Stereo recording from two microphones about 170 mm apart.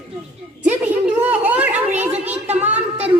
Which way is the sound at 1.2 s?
10° right (ahead or behind).